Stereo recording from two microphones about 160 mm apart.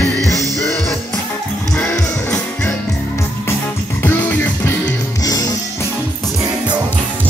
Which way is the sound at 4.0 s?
10° left (ahead or behind).